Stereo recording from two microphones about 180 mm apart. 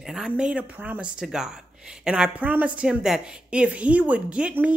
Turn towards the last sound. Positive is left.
turn(degrees=-5)  # may be behind; listen again after turning